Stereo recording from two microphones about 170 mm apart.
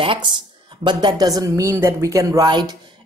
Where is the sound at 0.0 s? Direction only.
30° right (ahead or behind).